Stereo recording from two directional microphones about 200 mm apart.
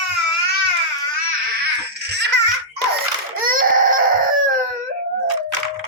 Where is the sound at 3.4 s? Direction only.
45° right (ahead or behind).